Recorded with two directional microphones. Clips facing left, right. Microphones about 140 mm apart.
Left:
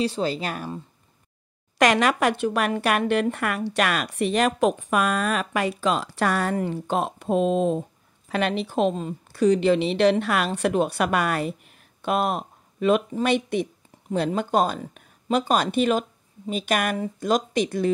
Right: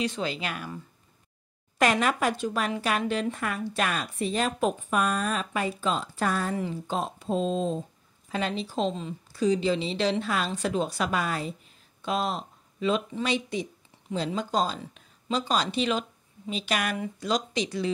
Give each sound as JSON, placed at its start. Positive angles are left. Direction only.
{"t": 0.0, "sound": "speech", "side_deg": 35}
{"t": 1.8, "sound": "a woman's voice", "side_deg": 80}